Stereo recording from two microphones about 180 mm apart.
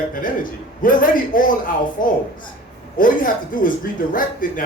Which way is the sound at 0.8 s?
50° left (ahead or behind).